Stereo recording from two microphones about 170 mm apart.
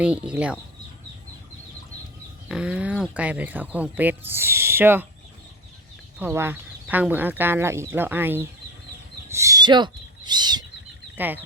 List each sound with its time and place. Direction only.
0.0 s speech: 10° right (ahead or behind)
2.5 s speech: 5° right (ahead or behind)
6.1 s speech: 15° right (ahead or behind)
9.3 s a sound: 20° right (ahead or behind)